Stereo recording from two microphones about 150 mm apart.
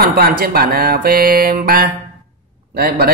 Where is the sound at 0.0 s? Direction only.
85° right.